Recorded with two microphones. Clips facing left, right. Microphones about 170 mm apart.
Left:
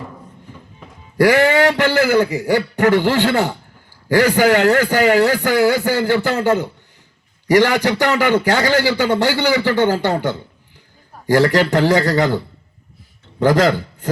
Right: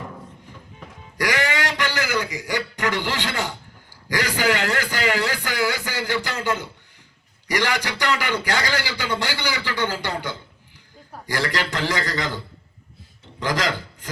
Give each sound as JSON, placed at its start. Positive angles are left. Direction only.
{"t": 1.2, "sound": "a man's voice", "side_deg": 45}
{"t": 13.6, "sound": "a man's voice", "side_deg": 40}